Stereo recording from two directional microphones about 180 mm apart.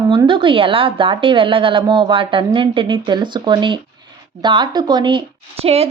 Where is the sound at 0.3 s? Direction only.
30° right (ahead or behind).